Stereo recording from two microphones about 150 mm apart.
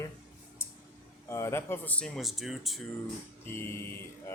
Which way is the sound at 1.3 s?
20° left (ahead or behind).